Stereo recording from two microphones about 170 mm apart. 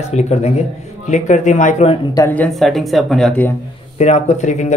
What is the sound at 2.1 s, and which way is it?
Speech, 15° left (ahead or behind).